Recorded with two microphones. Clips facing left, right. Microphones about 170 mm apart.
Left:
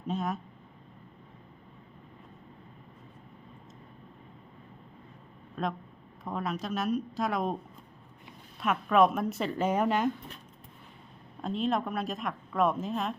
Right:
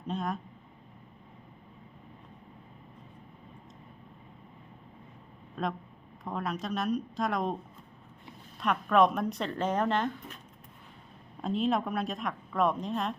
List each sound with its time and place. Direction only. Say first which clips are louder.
0.1 s a woman's voice: left 1 dB; centre (ahead or behind)
5.6 s a woman's voice: even; centre (ahead or behind)
8.6 s a woman's voice: left 1 dB; 5° left (ahead or behind)
11.4 s a woman's voice: right 1 dB; centre (ahead or behind)